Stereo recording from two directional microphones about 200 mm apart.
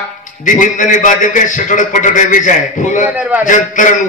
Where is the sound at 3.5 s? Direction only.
40° left (ahead or behind).